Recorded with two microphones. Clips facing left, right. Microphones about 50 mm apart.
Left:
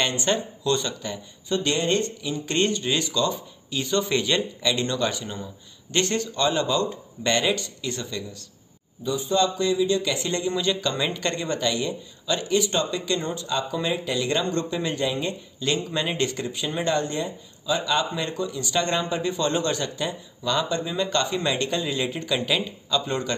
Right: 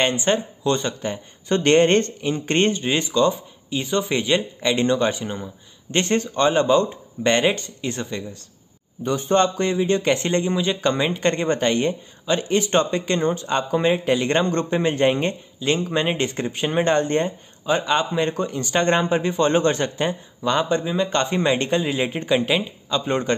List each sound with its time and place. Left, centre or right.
0.0 s a man's voice: right
1.5 s a man's voice: right
9.0 s a man's voice: right
10.5 s a man's voice: right
10.8 s speech: right
15.6 s speech: right
18.3 s a man's voice: right
22.4 s a man's voice: right